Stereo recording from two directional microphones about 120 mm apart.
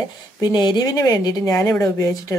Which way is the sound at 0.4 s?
35° left (ahead or behind).